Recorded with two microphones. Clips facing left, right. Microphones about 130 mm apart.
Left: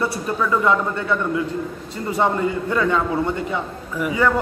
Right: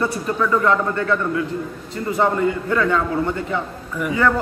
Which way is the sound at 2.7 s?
20° left (ahead or behind).